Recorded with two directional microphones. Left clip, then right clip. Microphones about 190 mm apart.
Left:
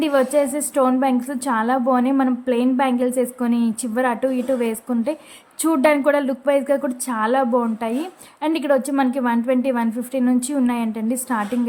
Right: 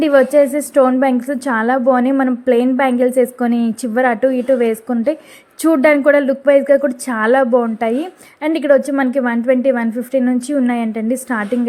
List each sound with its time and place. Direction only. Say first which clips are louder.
0.0 s a woman's voice: right 7 dB; 20° right (ahead or behind)